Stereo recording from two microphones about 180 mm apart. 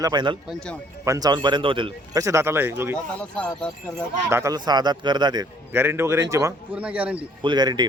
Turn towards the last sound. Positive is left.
turn(degrees=-25)  # may be behind; listen again after turning